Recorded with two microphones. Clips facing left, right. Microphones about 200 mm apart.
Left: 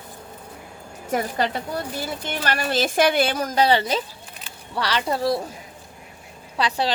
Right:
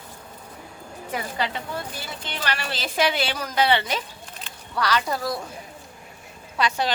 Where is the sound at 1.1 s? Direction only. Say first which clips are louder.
Left 5 dB; 45° left (ahead or behind); by 5.4 s 30° left (ahead or behind).